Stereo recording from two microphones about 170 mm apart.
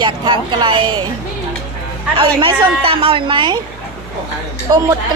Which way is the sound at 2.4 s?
30° right (ahead or behind).